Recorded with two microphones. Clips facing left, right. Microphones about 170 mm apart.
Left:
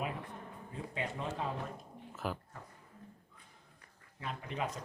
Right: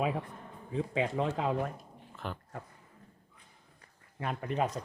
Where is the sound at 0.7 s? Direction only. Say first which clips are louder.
Right 9 dB; 90° right.